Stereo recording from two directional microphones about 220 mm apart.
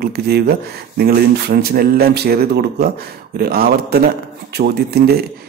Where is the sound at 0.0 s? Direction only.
45° right (ahead or behind).